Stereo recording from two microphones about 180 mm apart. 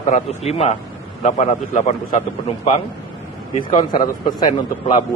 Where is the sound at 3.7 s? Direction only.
25° left (ahead or behind).